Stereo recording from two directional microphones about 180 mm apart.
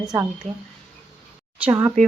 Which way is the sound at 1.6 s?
15° right (ahead or behind).